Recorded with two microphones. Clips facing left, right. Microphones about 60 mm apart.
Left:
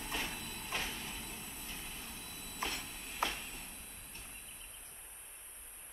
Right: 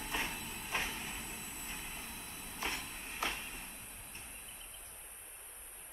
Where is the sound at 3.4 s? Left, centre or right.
Right.